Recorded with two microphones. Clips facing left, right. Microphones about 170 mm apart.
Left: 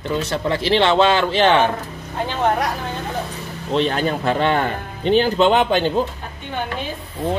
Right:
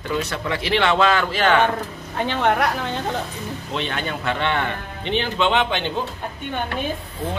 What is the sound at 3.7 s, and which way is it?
Speech, 35° left (ahead or behind).